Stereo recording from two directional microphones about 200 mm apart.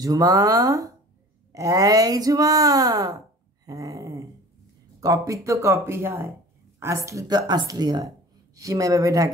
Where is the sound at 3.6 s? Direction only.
15° right (ahead or behind).